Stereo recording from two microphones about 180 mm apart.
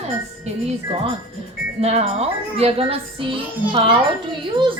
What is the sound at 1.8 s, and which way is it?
A woman's voice, 35° right (ahead or behind).